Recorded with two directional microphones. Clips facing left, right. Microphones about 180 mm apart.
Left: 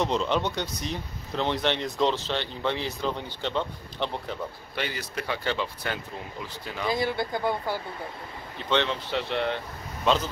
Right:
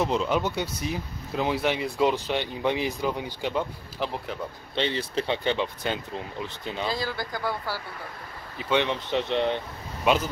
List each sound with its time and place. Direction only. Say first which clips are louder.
0.0 s speech: right 1 dB; 5° right (ahead or behind)
4.7 s speech: right 6 dB; 25° right (ahead or behind)
6.9 s speech: left 8 dB; 20° left (ahead or behind)
8.5 s speech: right 1 dB; 10° right (ahead or behind)